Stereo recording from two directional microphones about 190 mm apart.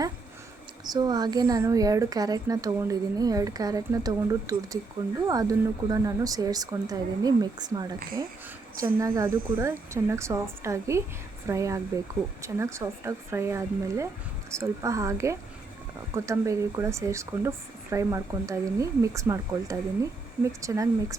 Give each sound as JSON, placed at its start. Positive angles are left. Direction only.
{"t": 0.9, "sound": "a woman's voice", "side_deg": -20}